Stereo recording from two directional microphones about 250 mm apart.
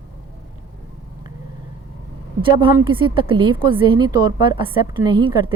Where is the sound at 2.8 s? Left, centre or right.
Centre.